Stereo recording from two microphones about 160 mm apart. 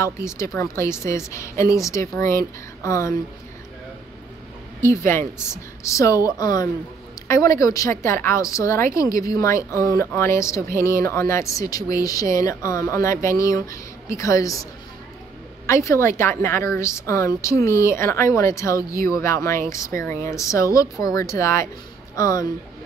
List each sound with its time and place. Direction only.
0.0 s a woman's voice: 20° left (ahead or behind)
4.7 s a woman's voice: 15° left (ahead or behind)